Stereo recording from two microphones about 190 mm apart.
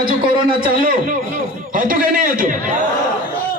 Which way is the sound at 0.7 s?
50° right (ahead or behind).